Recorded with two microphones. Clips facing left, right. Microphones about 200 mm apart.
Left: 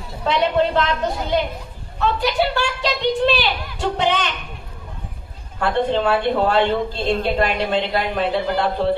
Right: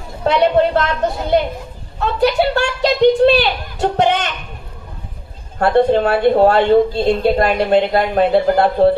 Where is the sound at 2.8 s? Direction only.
45° right (ahead or behind).